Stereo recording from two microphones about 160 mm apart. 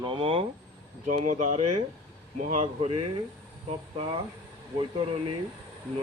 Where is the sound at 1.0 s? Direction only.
55° right (ahead or behind).